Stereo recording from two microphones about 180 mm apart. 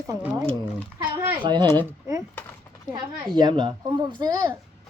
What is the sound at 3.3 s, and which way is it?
A child's voice, 25° right (ahead or behind).